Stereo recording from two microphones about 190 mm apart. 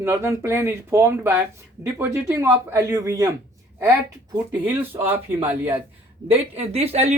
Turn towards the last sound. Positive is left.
turn(degrees=-35)  # may be behind; listen again after turning